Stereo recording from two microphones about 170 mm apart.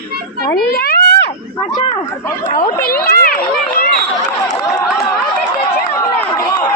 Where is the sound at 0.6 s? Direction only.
65° left (ahead or behind).